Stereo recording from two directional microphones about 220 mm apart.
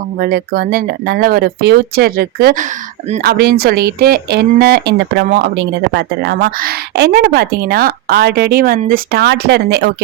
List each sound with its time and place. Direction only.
0.2 s speech: 45° right (ahead or behind)